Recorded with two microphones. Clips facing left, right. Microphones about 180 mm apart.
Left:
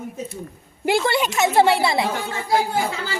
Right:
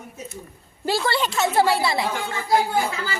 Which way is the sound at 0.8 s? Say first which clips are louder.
Left 3 dB; 20° left (ahead or behind).